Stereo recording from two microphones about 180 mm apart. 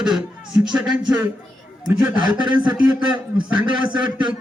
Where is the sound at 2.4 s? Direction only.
25° right (ahead or behind).